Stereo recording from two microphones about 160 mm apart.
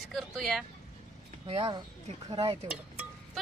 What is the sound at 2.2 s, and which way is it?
Stir, 30° right (ahead or behind).